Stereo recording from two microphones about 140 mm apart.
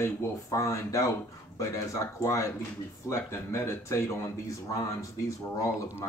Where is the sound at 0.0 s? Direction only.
20° left (ahead or behind).